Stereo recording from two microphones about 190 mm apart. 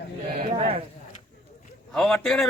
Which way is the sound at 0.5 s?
30° right (ahead or behind).